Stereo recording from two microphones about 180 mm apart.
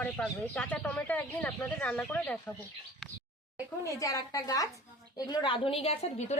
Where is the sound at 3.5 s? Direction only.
20° left (ahead or behind).